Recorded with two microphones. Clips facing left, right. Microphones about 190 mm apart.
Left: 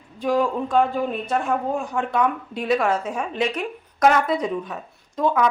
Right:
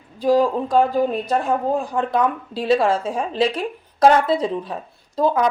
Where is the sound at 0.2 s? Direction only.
35° right (ahead or behind).